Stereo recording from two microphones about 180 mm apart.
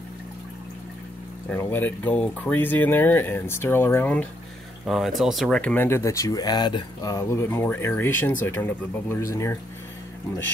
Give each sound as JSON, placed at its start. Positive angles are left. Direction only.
{"t": 1.5, "sound": "speech", "side_deg": 10}